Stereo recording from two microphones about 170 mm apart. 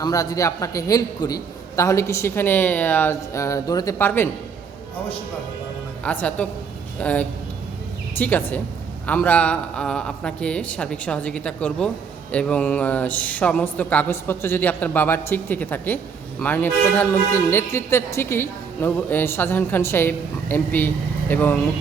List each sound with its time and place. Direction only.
0.0 s a man's voice: 20° left (ahead or behind)
6.1 s a man's voice: 10° left (ahead or behind)